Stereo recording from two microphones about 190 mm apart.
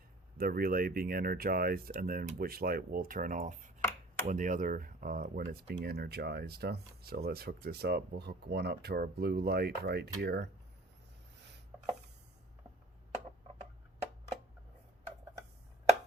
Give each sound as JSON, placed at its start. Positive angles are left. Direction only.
{"t": 0.3, "sound": "speech", "side_deg": -50}